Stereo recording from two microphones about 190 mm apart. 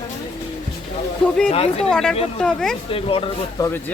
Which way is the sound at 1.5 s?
35° left (ahead or behind).